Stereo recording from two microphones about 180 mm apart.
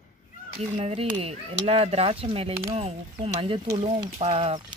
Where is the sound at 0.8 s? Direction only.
35° right (ahead or behind).